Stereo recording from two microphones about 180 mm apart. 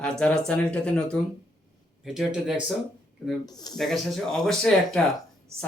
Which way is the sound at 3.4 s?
20° left (ahead or behind).